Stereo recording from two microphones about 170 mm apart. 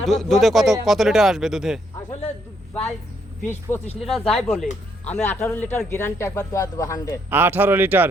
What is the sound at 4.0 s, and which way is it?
A man's voice, centre (ahead or behind).